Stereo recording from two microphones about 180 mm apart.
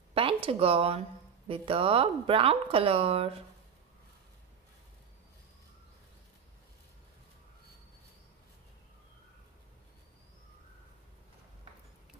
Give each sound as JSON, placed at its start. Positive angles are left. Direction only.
{"t": 0.1, "sound": "speech", "side_deg": -30}